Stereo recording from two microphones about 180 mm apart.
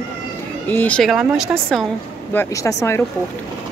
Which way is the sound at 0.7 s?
10° left (ahead or behind).